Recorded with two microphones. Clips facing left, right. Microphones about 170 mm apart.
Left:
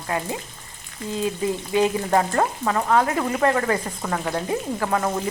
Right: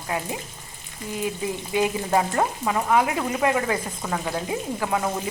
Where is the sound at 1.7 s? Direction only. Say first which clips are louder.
Left 2 dB; 15° right (ahead or behind).